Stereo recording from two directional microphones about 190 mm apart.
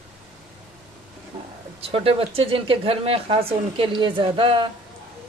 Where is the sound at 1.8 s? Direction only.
30° right (ahead or behind).